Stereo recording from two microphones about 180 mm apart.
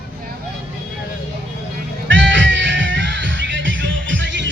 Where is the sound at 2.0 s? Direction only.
85° right.